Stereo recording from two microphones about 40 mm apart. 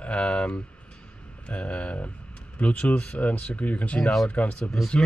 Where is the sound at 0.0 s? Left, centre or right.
Left.